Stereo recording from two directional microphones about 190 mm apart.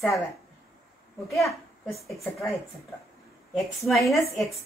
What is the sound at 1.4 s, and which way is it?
Speech, 15° left (ahead or behind).